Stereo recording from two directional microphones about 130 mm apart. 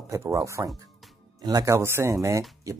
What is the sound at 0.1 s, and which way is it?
Speech, 25° right (ahead or behind).